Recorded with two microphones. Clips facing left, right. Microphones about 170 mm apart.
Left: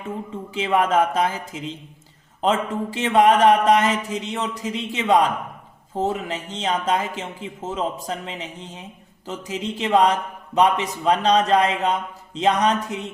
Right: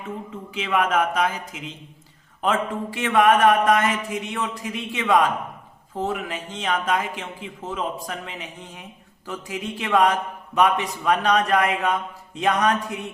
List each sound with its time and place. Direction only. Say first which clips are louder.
0.5 s a man's voice: left 3 dB; 30° left (ahead or behind)